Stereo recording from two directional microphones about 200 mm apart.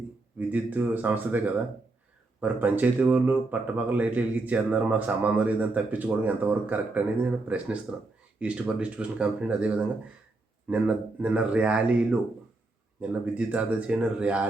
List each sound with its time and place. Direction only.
0.3 s speech: 10° right (ahead or behind)